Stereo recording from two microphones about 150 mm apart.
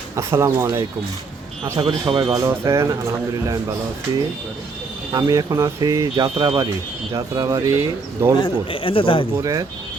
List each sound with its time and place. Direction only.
0.2 s speech: 20° right (ahead or behind)
1.8 s speech: 30° right (ahead or behind)
2.3 s speech: 20° right (ahead or behind)
5.1 s speech: 25° right (ahead or behind)
6.3 s speech: 35° right (ahead or behind)
7.1 s speech: 25° right (ahead or behind)
8.4 s speech: 35° left (ahead or behind)
9.4 s speech: 25° right (ahead or behind)